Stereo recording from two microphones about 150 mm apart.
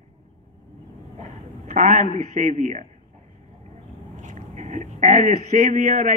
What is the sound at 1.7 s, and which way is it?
A man's voice, 60° right (ahead or behind).